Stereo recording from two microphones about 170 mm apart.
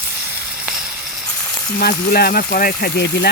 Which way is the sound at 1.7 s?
65° left (ahead or behind).